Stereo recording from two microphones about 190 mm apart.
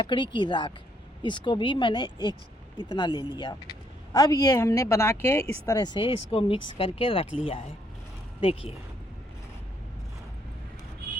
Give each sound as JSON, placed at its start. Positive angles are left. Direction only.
{"t": 0.0, "sound": "speech", "side_deg": 25}
{"t": 8.4, "sound": "speech", "side_deg": 30}